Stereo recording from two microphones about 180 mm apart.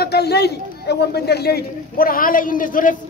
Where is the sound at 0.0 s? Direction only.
65° left (ahead or behind).